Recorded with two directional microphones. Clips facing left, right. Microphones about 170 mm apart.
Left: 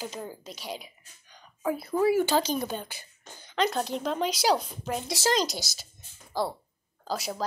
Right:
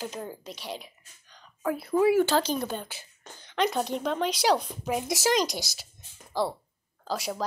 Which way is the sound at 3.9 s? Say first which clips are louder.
Right 1 dB; centre (ahead or behind).